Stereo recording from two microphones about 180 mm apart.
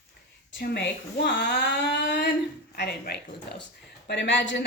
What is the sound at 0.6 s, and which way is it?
Speech, 65° left (ahead or behind).